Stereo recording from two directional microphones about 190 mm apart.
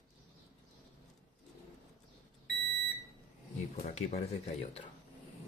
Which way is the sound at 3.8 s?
35° left (ahead or behind).